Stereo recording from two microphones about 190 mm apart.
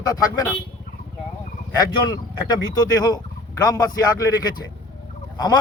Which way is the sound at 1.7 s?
20° left (ahead or behind).